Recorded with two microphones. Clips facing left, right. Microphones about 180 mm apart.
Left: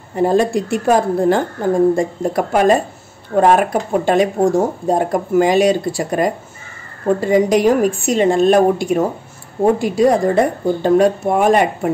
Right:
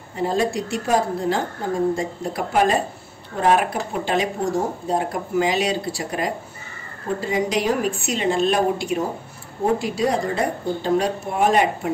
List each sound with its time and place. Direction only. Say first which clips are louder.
0.1 s speech: left 7 dB; 50° left (ahead or behind)